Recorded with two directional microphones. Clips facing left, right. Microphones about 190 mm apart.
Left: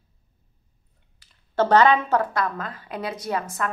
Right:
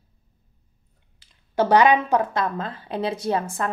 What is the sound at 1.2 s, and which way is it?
A woman's voice, 10° right (ahead or behind).